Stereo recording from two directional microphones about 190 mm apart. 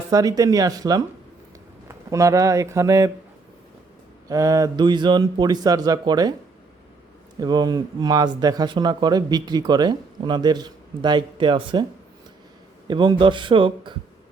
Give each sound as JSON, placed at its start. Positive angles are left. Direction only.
{"t": 0.1, "sound": "speech", "side_deg": -20}
{"t": 4.3, "sound": "speech", "side_deg": -20}
{"t": 7.3, "sound": "speech", "side_deg": -20}
{"t": 12.9, "sound": "speech", "side_deg": -20}